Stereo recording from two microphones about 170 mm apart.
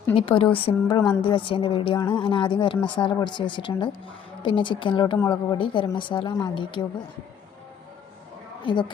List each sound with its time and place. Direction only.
0.2 s a woman's voice: 30° left (ahead or behind)
8.6 s a woman's voice: 30° left (ahead or behind)